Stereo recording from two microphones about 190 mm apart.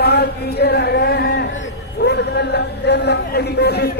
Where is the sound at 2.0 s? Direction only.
60° left (ahead or behind).